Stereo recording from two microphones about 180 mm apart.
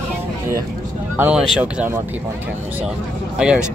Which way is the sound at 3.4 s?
5° right (ahead or behind).